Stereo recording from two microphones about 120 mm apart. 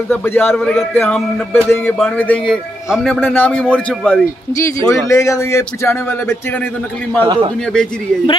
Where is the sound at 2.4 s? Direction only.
Centre (ahead or behind).